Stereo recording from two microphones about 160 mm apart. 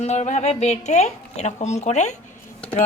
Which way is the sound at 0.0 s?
45° left (ahead or behind).